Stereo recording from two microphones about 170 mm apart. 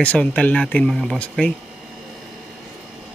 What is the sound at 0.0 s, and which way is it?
Speech, 10° left (ahead or behind).